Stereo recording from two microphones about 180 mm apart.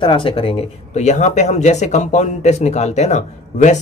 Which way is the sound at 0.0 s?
30° left (ahead or behind).